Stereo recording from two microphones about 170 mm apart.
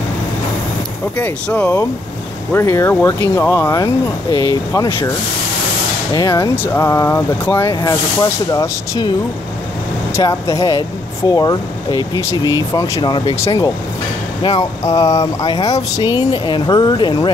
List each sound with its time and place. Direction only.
1.1 s speech: 10° left (ahead or behind)
4.7 s speech: 30° left (ahead or behind)
6.1 s speech: 20° left (ahead or behind)
10.1 s speech: 20° left (ahead or behind)